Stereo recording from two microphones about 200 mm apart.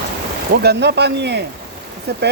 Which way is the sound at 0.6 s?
55° right (ahead or behind).